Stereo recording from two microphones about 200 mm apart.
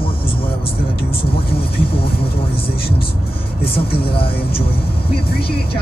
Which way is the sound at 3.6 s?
50° left (ahead or behind).